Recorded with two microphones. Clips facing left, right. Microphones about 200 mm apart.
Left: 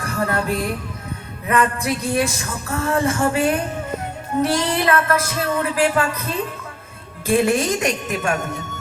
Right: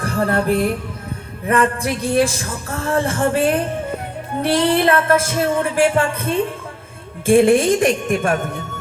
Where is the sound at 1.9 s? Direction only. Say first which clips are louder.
Right 7 dB; 30° right (ahead or behind).